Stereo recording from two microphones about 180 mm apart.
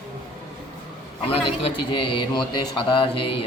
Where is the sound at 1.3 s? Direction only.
30° left (ahead or behind).